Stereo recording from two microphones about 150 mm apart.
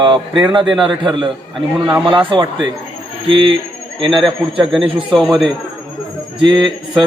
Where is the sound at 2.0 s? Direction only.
35° right (ahead or behind).